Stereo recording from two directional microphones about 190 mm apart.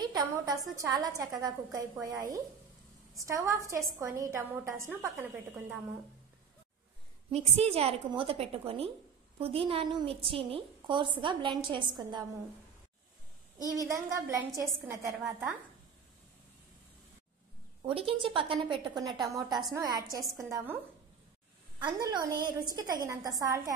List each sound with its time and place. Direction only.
0.0 s a woman's voice: 20° right (ahead or behind)
7.2 s a woman's voice: 30° right (ahead or behind)
13.7 s a woman's voice: 15° right (ahead or behind)
17.8 s a woman's voice: 30° right (ahead or behind)
21.8 s a woman's voice: 20° right (ahead or behind)